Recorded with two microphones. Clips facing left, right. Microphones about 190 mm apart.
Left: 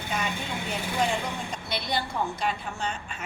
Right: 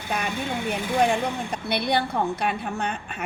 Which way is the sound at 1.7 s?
60° right (ahead or behind).